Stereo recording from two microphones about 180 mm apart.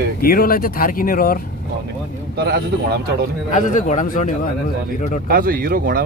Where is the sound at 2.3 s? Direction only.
65° right (ahead or behind).